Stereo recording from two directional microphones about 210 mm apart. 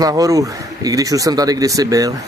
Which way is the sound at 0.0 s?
15° right (ahead or behind).